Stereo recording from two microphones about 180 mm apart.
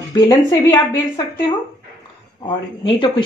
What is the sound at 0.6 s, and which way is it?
Speech, 25° left (ahead or behind).